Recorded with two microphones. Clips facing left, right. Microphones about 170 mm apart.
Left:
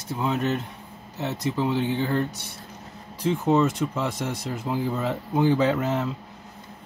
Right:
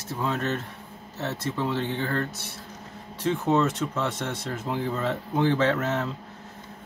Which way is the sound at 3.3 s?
10° left (ahead or behind).